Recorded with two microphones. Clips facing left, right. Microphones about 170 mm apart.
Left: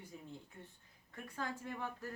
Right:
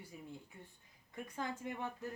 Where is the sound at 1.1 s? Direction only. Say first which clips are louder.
Right 1 dB; 20° right (ahead or behind).